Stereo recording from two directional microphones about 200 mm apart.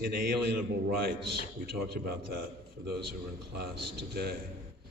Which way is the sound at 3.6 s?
50° right (ahead or behind).